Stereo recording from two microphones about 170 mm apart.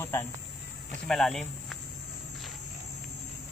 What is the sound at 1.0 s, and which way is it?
Speech, 5° left (ahead or behind).